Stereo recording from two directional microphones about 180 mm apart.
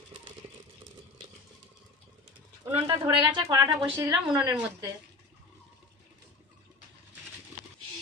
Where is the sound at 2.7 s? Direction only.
30° right (ahead or behind).